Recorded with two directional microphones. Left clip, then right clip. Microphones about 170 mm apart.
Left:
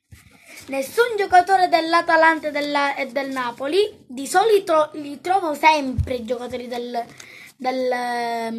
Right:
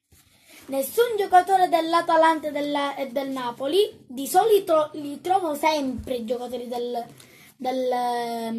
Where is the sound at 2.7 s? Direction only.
35° left (ahead or behind).